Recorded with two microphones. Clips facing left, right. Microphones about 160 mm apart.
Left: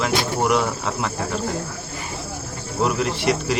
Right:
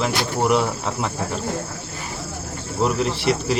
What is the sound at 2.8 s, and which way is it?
Speech, 5° left (ahead or behind).